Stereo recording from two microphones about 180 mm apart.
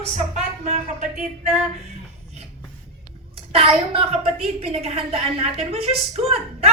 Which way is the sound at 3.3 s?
30° right (ahead or behind).